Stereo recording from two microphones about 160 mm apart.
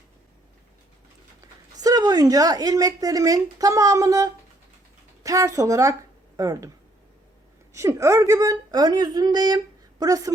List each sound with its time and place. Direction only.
1.7 s speech: 25° right (ahead or behind)
7.7 s speech: 20° right (ahead or behind)